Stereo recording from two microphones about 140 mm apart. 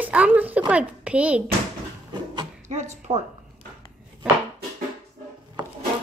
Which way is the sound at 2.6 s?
55° right (ahead or behind).